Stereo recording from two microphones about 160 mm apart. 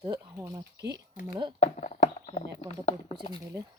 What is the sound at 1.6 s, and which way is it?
Speech, 45° left (ahead or behind).